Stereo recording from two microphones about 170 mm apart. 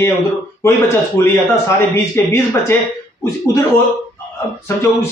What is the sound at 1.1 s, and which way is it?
A man's voice, 15° left (ahead or behind).